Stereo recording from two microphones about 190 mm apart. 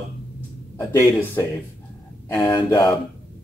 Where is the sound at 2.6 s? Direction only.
15° left (ahead or behind).